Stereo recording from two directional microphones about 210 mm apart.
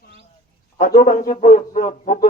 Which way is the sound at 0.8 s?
45° left (ahead or behind).